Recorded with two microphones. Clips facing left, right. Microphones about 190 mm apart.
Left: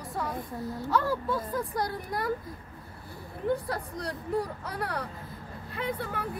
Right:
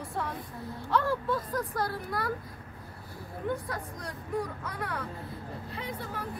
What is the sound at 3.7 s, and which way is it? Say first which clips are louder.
Speech: left 4 dB; 35° left (ahead or behind).